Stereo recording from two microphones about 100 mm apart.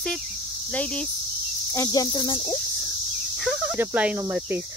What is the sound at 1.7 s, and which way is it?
Cricket, 35° left (ahead or behind).